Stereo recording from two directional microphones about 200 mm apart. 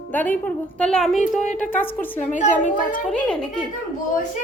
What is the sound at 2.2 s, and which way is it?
Speech, 40° left (ahead or behind).